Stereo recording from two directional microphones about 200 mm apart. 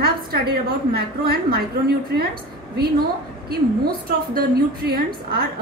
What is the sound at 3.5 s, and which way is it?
A woman's voice, 50° right (ahead or behind).